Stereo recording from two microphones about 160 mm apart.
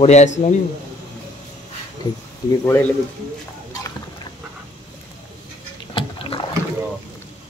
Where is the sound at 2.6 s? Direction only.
15° left (ahead or behind).